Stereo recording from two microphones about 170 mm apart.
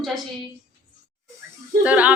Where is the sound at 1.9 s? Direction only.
10° right (ahead or behind).